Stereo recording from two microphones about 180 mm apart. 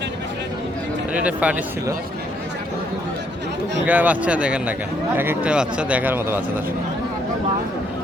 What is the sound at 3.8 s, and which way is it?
Speech, 10° right (ahead or behind).